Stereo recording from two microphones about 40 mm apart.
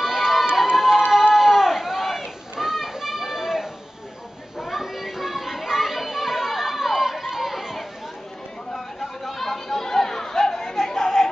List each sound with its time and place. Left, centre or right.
0.0 s run: centre
1.3 s a sound: centre
4.6 s children playing: centre
8.7 s chatter: centre